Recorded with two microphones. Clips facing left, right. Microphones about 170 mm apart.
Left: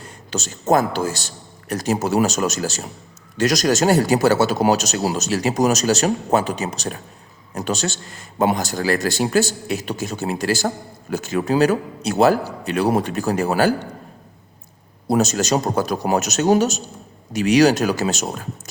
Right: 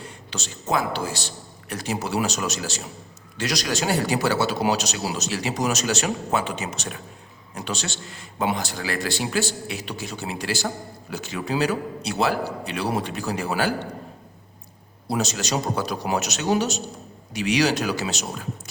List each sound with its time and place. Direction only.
0.0 s a man's voice: 45° left (ahead or behind)
15.0 s a man's voice: 45° left (ahead or behind)